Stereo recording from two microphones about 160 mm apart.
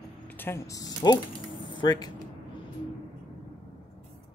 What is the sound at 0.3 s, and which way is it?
Speech, 15° left (ahead or behind).